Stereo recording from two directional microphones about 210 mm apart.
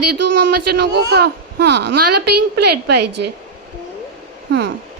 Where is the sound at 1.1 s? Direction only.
50° right (ahead or behind).